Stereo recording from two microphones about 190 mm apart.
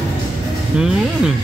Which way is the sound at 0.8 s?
5° right (ahead or behind).